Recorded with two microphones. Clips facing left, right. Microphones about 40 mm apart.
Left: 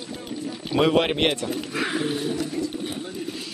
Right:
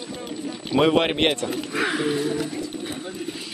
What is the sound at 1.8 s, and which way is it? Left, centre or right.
Speech, right.